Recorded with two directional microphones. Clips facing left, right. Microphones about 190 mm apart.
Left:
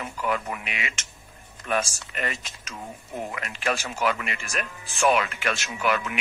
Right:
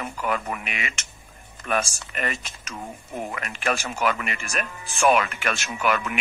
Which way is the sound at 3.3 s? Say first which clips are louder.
Right 1 dB; 50° right (ahead or behind).